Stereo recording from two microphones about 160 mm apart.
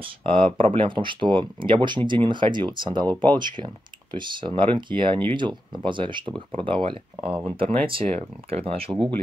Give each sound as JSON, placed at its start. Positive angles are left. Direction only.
{"t": 0.0, "sound": "speech", "side_deg": -35}